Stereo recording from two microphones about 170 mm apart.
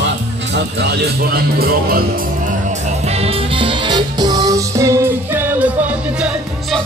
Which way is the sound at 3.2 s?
30° right (ahead or behind).